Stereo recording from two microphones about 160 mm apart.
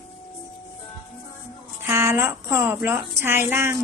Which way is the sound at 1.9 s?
15° right (ahead or behind).